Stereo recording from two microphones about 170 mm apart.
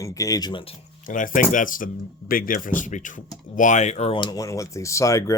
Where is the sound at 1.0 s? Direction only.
50° left (ahead or behind).